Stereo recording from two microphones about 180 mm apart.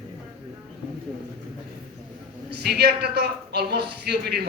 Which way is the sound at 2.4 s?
65° right (ahead or behind).